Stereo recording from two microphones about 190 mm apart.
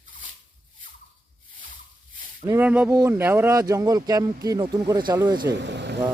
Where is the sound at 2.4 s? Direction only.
10° right (ahead or behind).